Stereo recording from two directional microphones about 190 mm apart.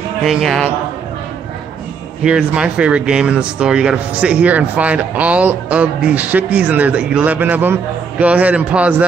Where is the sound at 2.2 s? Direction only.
5° right (ahead or behind).